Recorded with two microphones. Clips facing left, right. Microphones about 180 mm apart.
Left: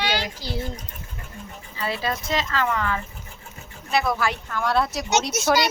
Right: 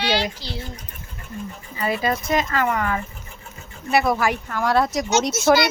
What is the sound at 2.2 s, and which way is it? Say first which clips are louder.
Speech: right 4 dB; 55° right (ahead or behind).